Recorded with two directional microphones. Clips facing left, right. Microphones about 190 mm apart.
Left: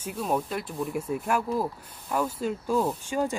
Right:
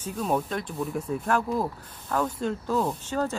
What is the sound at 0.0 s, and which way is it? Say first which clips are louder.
Speech: right 1 dB; 5° left (ahead or behind).